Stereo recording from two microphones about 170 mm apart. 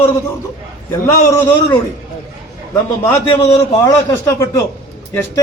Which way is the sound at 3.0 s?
15° left (ahead or behind).